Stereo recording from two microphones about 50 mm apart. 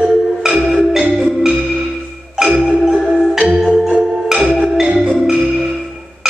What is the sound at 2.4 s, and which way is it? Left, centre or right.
Marimba, centre.